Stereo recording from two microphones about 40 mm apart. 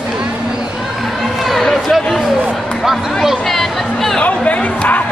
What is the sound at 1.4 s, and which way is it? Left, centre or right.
Chatter, centre.